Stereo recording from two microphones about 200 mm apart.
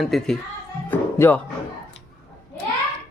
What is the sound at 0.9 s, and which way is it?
Music, 10° left (ahead or behind).